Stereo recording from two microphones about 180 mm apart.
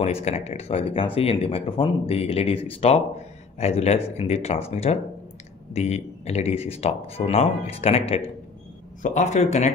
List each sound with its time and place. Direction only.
0.0 s speech: 35° left (ahead or behind)